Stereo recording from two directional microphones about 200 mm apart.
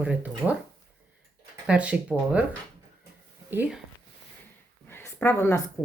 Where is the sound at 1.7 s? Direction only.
5° right (ahead or behind).